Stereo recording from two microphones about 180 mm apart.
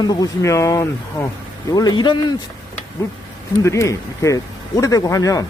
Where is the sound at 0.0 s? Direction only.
20° left (ahead or behind).